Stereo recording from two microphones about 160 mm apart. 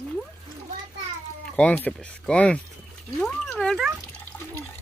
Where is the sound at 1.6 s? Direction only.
10° left (ahead or behind).